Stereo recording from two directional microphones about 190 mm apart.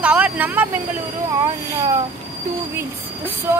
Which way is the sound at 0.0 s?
10° right (ahead or behind).